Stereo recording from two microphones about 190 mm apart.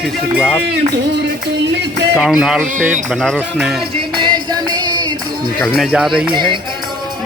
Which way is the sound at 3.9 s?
25° right (ahead or behind).